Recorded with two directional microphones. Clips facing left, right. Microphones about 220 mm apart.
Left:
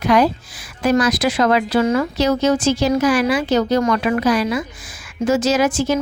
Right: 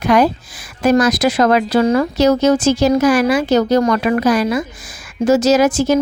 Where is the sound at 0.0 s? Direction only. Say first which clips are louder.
Right 2 dB; 50° right (ahead or behind).